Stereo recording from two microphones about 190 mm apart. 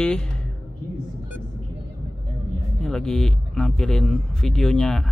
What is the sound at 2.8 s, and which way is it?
Speech, centre (ahead or behind).